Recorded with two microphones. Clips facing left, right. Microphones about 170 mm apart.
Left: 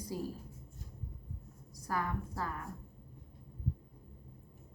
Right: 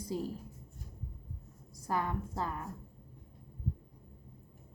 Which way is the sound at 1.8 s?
25° right (ahead or behind).